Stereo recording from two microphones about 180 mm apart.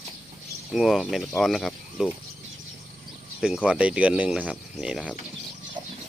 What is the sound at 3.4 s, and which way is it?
Speech, 5° right (ahead or behind).